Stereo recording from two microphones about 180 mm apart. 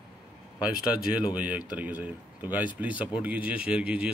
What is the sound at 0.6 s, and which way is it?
Speech, 5° right (ahead or behind).